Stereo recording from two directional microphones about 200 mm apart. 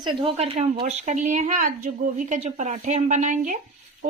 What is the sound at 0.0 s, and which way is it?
A woman's voice, 25° right (ahead or behind).